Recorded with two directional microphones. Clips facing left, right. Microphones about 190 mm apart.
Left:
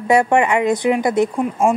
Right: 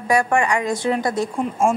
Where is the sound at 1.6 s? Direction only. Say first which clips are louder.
Left 2 dB; centre (ahead or behind).